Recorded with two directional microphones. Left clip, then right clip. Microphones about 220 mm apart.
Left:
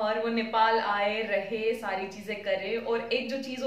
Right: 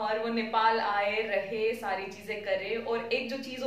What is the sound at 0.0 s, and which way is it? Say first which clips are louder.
A woman's voice: left 2 dB; 15° left (ahead or behind).